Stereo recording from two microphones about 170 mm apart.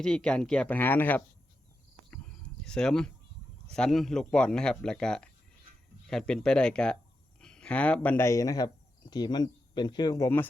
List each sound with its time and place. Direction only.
0.0 s speech: 5° left (ahead or behind)
2.0 s a sound: 5° left (ahead or behind)
3.7 s speech: 5° left (ahead or behind)